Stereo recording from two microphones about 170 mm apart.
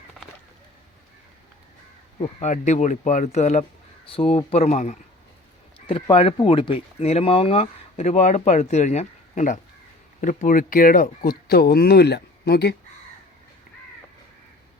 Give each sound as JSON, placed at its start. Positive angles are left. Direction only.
{"t": 2.1, "sound": "speech", "side_deg": 40}